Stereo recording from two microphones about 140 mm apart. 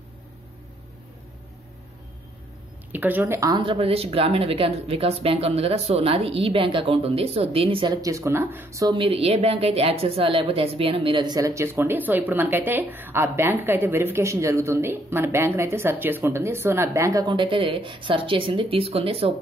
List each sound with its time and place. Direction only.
2.9 s speech: 10° right (ahead or behind)
3.6 s a woman's voice: 45° right (ahead or behind); by 8.9 s 20° right (ahead or behind)
8.9 s a woman's voice: 40° right (ahead or behind)